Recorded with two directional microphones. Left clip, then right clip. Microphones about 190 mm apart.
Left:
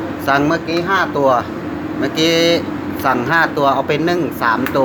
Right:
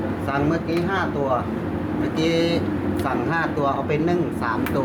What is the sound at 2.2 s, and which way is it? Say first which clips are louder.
Speech: left 8 dB; 35° left (ahead or behind).